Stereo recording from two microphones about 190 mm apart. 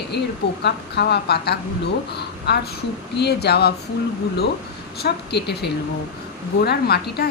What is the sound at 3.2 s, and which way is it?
Speech, 60° left (ahead or behind).